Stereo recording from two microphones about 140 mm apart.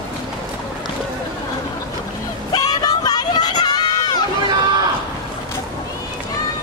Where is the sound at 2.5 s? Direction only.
30° left (ahead or behind).